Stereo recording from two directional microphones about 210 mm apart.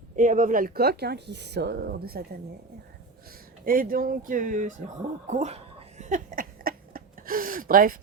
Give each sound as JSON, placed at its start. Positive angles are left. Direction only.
{"t": 0.2, "sound": "speech", "side_deg": -40}
{"t": 3.7, "sound": "speech", "side_deg": -40}
{"t": 6.0, "sound": "a sound", "side_deg": -35}